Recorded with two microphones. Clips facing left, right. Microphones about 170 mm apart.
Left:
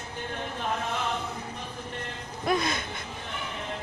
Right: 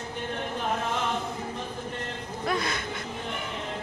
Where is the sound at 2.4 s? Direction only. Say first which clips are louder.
Left 2 dB; 20° left (ahead or behind).